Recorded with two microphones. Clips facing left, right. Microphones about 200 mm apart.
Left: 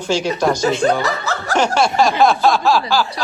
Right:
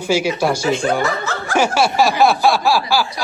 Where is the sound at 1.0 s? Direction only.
35° left (ahead or behind).